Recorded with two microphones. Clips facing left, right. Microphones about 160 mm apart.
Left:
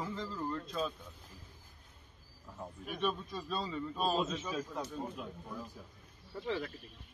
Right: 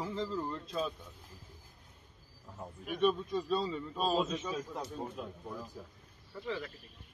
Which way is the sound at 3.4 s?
25° right (ahead or behind).